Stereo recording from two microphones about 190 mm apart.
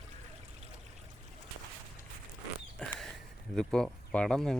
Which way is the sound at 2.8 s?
5° left (ahead or behind).